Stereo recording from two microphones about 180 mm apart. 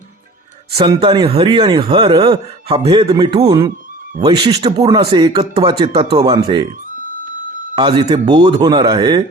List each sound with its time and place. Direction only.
0.7 s speech: 35° right (ahead or behind)
7.8 s speech: 25° right (ahead or behind)